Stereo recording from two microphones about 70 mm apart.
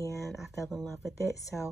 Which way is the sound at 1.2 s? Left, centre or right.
Left.